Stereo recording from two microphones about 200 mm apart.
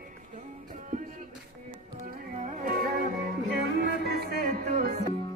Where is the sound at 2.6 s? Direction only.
45° right (ahead or behind).